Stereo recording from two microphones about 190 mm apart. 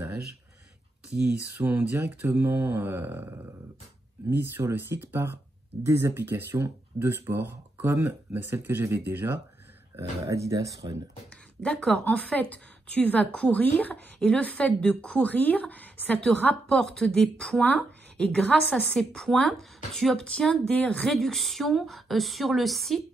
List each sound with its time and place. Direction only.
1.6 s speech: 10° right (ahead or behind)
11.6 s speech: 5° left (ahead or behind)